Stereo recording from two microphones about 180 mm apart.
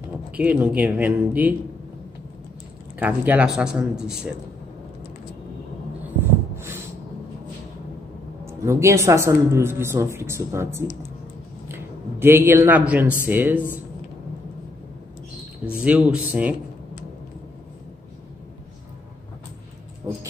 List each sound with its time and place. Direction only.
0.3 s speech: 10° right (ahead or behind)
3.0 s speech: 10° right (ahead or behind)
6.0 s snort: 15° right (ahead or behind)
8.5 s a man's voice: 15° right (ahead or behind)
15.8 s speech: 5° right (ahead or behind)
20.1 s speech: 15° right (ahead or behind)